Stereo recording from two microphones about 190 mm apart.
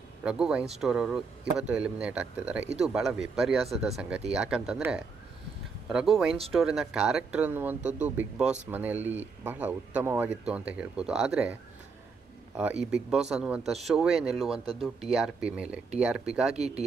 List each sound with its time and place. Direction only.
0.2 s a man's voice: 5° right (ahead or behind)
12.9 s speech: 5° right (ahead or behind)
16.5 s speech: 35° right (ahead or behind)